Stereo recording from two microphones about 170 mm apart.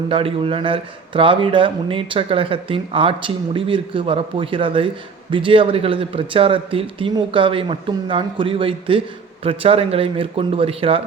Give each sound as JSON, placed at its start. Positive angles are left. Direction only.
{"t": 0.1, "sound": "speech", "side_deg": -30}